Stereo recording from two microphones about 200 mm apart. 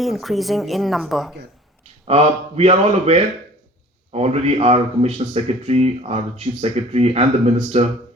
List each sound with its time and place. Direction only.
0.0 s speech: centre (ahead or behind)
2.0 s speech: 30° right (ahead or behind)